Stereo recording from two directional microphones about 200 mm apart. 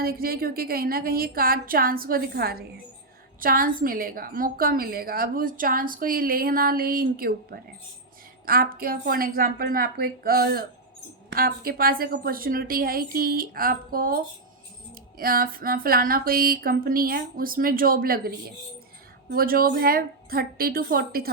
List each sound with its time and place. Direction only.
0.0 s a woman's voice: 50° right (ahead or behind)
15.2 s a woman's voice: 45° right (ahead or behind)